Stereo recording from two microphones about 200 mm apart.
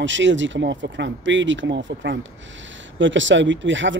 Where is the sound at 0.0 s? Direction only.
65° right (ahead or behind).